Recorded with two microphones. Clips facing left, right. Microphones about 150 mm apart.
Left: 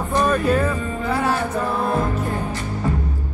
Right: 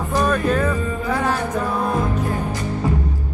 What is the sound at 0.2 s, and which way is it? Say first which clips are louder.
Speech: left 1 dB; 10° left (ahead or behind).